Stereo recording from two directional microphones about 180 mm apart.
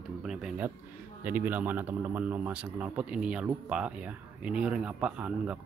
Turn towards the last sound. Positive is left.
turn(degrees=-5)  # may be behind; listen again after turning